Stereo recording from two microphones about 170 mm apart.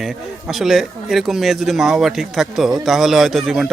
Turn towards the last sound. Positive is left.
turn(degrees=0)  # may be behind; listen again after turning